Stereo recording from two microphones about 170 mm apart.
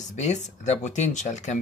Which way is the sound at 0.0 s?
45° left (ahead or behind).